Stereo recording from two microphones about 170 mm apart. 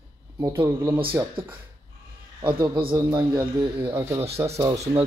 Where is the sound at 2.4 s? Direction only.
25° right (ahead or behind).